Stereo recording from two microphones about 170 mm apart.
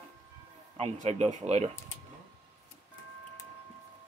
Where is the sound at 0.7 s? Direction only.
40° right (ahead or behind).